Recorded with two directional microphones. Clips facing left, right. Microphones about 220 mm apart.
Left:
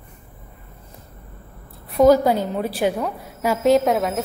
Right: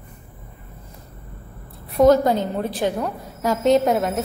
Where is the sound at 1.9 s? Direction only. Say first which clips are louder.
Left 1 dB; 5° left (ahead or behind).